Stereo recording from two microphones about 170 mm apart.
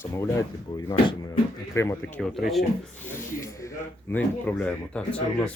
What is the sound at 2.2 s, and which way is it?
Speech, centre (ahead or behind).